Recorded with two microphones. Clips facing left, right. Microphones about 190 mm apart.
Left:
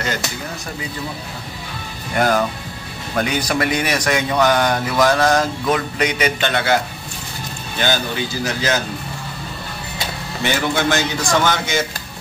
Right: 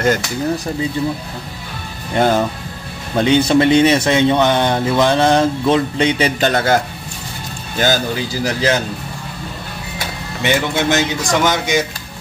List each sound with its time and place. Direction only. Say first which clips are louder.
2.1 s speech: right 3 dB; 30° right (ahead or behind)
8.5 s a man's voice: right 5 dB; 30° right (ahead or behind)
10.4 s speech: right 2 dB; 20° right (ahead or behind)